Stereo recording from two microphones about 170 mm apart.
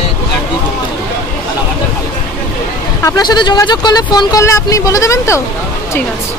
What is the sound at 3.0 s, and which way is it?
Speech, 20° left (ahead or behind).